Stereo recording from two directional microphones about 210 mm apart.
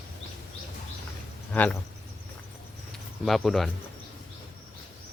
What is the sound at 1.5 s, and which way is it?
Speech, 5° left (ahead or behind).